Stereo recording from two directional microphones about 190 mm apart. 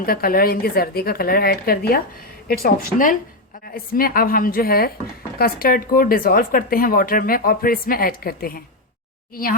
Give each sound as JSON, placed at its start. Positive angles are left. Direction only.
{"t": 0.0, "sound": "speech", "side_deg": 50}